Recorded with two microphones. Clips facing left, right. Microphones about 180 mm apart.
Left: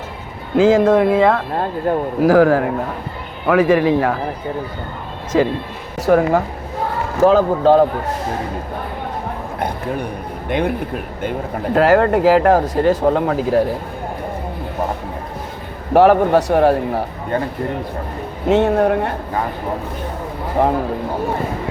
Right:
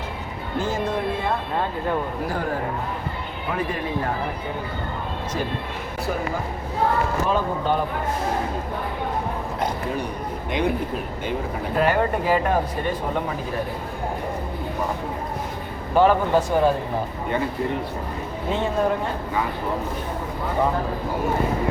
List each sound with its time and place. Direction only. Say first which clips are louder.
0.5 s speech: left 13 dB; 90° left
1.9 s a man's voice: left 7 dB; 45° left (ahead or behind)
2.2 s speech: left 14 dB; 90° left
5.3 s speech: left 13 dB; 90° left
6.0 s a man's voice: left 13 dB; 80° left
7.3 s speech: left 10 dB; 90° left
10.5 s speech: left 4 dB; 55° left (ahead or behind)
11.7 s speech: left 8 dB; 85° left
15.9 s a man's voice: left 7 dB; 70° left (ahead or behind)
18.4 s a man's voice: left 9 dB; 75° left (ahead or behind)
20.6 s speech: left 6 dB; 90° left